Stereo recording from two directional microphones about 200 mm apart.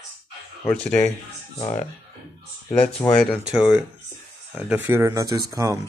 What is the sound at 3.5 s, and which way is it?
Speech, 5° right (ahead or behind).